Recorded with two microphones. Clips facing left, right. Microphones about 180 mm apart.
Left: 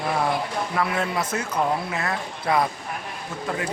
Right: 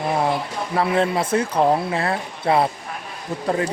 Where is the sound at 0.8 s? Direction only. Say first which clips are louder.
Right 7 dB; 30° right (ahead or behind).